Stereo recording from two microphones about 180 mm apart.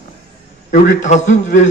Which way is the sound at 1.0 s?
40° left (ahead or behind).